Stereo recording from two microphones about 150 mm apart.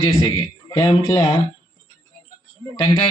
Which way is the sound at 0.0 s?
25° left (ahead or behind).